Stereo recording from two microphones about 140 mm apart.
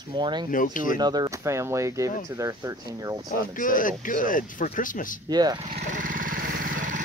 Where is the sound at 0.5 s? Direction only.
70° left (ahead or behind).